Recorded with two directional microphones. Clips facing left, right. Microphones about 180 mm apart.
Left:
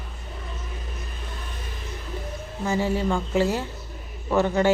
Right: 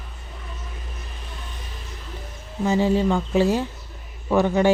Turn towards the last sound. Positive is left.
turn(degrees=-15)  # may be behind; listen again after turning